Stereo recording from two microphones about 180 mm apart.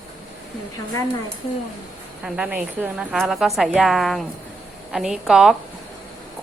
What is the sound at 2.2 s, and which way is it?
A woman's voice, 5° right (ahead or behind).